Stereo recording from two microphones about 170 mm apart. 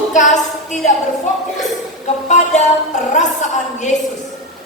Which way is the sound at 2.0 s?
45° left (ahead or behind).